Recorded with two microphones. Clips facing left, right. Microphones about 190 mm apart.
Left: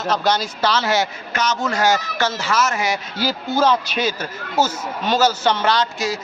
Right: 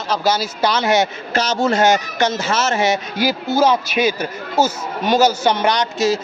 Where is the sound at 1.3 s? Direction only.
30° right (ahead or behind).